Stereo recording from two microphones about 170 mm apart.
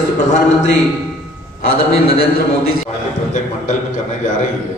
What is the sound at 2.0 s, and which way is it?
Speech, 65° left (ahead or behind).